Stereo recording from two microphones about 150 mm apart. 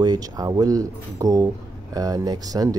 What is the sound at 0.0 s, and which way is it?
Speech, 25° right (ahead or behind).